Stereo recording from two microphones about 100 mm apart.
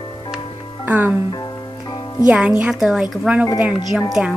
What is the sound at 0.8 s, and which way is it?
Speech, 20° right (ahead or behind).